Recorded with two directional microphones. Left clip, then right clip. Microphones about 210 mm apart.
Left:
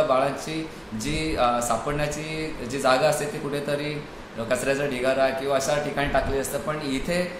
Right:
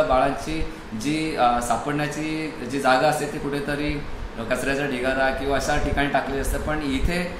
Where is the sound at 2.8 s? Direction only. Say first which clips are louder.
Right 2 dB; 20° left (ahead or behind).